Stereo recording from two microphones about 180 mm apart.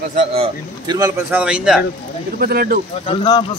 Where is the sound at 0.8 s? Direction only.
20° right (ahead or behind).